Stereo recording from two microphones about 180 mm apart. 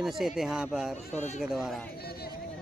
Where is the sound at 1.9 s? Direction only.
60° left (ahead or behind).